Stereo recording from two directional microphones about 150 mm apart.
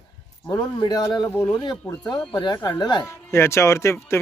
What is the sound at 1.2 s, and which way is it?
Speech, 15° left (ahead or behind).